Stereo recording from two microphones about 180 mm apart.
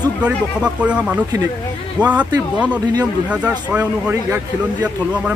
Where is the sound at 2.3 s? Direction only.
20° right (ahead or behind).